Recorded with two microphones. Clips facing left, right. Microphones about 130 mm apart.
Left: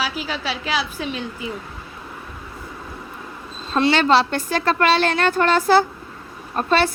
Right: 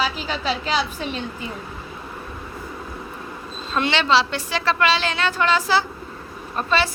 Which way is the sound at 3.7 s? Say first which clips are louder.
Left 3 dB; 40° left (ahead or behind).